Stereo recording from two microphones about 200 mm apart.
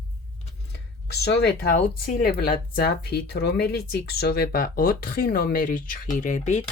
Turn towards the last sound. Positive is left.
turn(degrees=35)  # may be behind; listen again after turning